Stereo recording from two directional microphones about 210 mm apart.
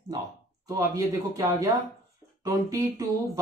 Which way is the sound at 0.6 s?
15° right (ahead or behind).